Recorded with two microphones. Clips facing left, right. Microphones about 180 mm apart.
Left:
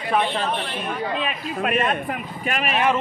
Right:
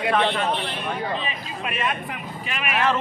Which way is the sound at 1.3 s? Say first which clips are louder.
Left 7 dB; 55° left (ahead or behind).